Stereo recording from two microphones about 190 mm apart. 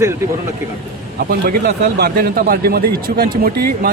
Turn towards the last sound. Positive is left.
turn(degrees=-55)  # may be behind; listen again after turning